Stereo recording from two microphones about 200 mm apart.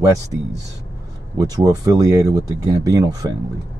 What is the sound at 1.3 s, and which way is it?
Speech, 15° right (ahead or behind).